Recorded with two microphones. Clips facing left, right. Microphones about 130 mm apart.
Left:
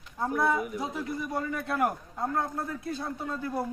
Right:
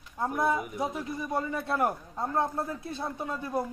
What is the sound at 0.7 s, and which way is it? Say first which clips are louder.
A man's voice: even; 25° right (ahead or behind).